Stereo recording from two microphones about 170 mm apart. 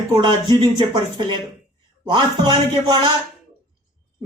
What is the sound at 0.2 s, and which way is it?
Speech, 25° right (ahead or behind).